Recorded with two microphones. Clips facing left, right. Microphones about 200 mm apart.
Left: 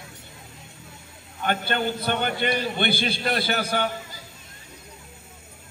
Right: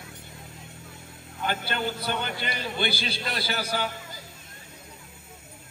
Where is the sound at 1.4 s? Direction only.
60° left (ahead or behind).